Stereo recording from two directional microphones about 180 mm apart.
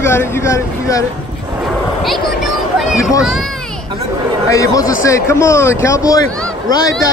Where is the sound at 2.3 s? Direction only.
Centre (ahead or behind).